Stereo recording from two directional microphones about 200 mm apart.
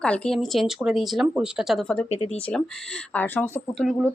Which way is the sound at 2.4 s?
5° left (ahead or behind).